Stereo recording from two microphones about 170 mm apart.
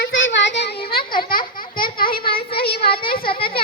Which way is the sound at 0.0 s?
90° left.